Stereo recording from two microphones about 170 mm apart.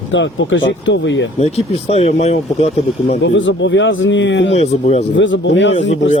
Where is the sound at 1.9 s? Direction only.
40° left (ahead or behind).